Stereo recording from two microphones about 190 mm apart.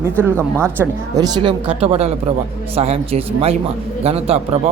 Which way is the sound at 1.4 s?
30° right (ahead or behind).